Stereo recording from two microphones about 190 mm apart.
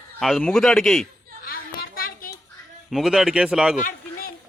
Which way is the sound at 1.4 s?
50° left (ahead or behind).